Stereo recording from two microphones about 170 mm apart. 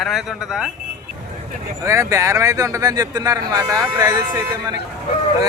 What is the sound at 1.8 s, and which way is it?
A man's voice, 20° right (ahead or behind).